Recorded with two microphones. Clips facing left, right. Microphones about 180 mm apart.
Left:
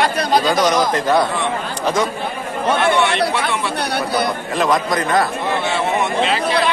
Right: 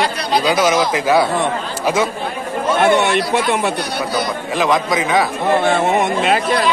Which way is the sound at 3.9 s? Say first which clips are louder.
Left 1 dB; 60° left (ahead or behind).